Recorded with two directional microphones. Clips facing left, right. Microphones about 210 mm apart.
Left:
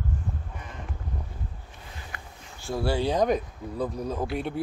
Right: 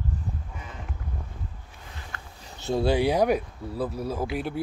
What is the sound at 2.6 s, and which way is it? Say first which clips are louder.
Speech: right 4 dB; 20° right (ahead or behind).